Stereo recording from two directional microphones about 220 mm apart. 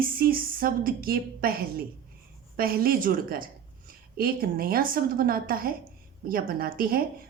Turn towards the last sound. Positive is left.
turn(degrees=-40)  # may be behind; listen again after turning